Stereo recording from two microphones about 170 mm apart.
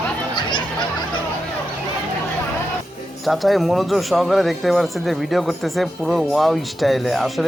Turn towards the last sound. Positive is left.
turn(degrees=0)  # may be behind; listen again after turning